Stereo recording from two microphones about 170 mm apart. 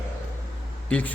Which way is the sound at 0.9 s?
10° left (ahead or behind).